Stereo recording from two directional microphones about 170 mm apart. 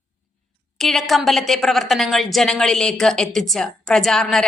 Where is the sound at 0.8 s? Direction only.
Centre (ahead or behind).